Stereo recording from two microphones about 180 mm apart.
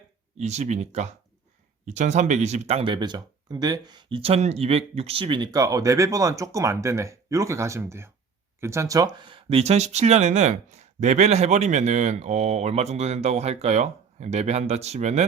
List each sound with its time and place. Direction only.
0.3 s speech: 40° right (ahead or behind)